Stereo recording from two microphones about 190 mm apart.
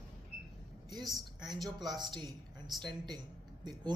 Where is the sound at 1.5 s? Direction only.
Centre (ahead or behind).